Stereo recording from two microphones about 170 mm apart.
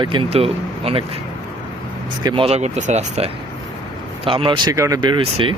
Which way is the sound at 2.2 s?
30° right (ahead or behind).